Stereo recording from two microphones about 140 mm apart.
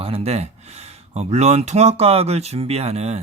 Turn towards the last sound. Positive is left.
turn(degrees=-50)  # may be behind; listen again after turning